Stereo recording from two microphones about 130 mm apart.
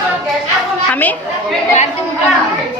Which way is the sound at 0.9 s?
15° left (ahead or behind).